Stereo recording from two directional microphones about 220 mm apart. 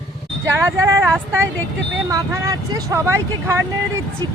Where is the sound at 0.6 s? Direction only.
15° right (ahead or behind).